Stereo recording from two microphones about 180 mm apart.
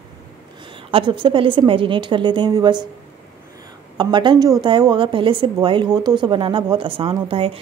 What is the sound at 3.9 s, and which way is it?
A woman's voice, 25° right (ahead or behind).